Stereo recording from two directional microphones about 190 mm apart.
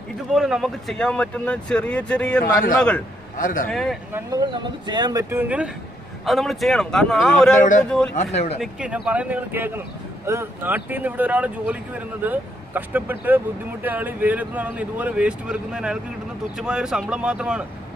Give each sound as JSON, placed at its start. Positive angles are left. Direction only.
{"t": 0.3, "sound": "speech", "side_deg": 0}
{"t": 3.3, "sound": "speech", "side_deg": 45}
{"t": 3.6, "sound": "speech", "side_deg": 0}
{"t": 4.1, "sound": "speech", "side_deg": -20}
{"t": 8.2, "sound": "speech", "side_deg": 35}
{"t": 8.5, "sound": "speech", "side_deg": -5}